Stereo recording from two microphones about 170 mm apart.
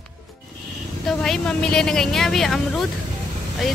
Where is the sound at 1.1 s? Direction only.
Centre (ahead or behind).